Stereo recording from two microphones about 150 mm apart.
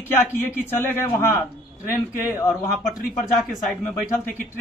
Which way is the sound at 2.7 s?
5° right (ahead or behind).